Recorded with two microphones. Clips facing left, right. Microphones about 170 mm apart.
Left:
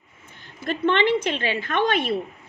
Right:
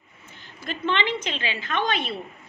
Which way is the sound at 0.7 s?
55° left (ahead or behind).